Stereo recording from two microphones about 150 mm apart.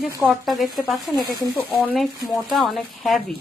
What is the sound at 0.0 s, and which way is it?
Speech, centre (ahead or behind).